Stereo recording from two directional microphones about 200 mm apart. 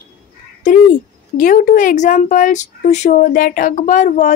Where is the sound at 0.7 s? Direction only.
40° left (ahead or behind).